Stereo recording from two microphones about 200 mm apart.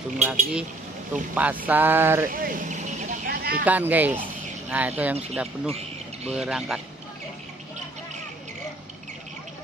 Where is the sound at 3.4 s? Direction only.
50° right (ahead or behind).